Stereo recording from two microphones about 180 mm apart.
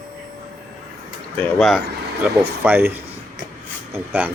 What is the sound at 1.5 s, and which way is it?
Speech, centre (ahead or behind).